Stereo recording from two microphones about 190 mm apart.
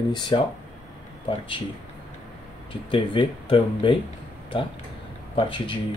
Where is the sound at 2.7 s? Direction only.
25° left (ahead or behind).